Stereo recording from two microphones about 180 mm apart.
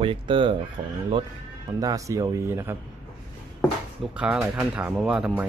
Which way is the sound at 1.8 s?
20° right (ahead or behind).